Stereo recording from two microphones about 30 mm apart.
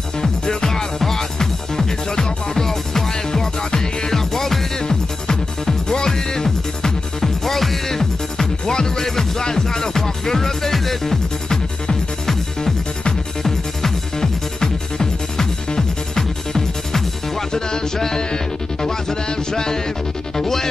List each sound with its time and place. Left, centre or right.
0.2 s music: left
4.1 s music: centre
4.8 s music: left
7.5 s music: centre
8.0 s music: centre
11.4 s music: left
13.4 s music: centre
17.5 s music: left